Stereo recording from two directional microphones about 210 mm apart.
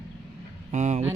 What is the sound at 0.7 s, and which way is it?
Speech, 35° right (ahead or behind).